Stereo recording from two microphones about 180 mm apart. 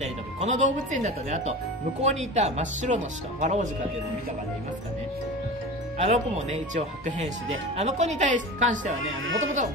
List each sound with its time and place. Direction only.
0.0 s speech: 40° right (ahead or behind)
5.9 s speech: 35° right (ahead or behind)
9.0 s speech: 90° right